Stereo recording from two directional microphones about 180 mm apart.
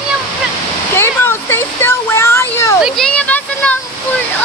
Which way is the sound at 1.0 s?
15° left (ahead or behind).